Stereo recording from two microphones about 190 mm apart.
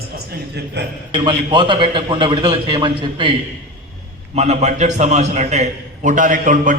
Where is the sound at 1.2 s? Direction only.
25° right (ahead or behind).